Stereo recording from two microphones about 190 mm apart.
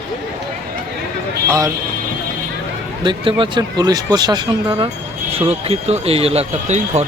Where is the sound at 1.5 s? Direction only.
15° right (ahead or behind).